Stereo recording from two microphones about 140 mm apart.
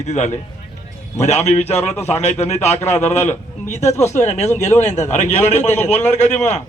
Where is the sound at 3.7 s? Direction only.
55° left (ahead or behind).